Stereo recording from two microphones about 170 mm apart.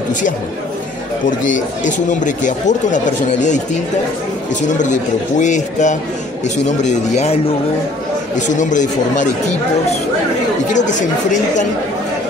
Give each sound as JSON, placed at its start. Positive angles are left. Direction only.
{"t": 1.4, "sound": "speech", "side_deg": 50}
{"t": 5.4, "sound": "speech", "side_deg": 45}
{"t": 8.5, "sound": "speech", "side_deg": 45}